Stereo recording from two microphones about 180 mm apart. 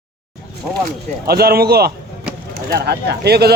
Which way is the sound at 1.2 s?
60° right (ahead or behind).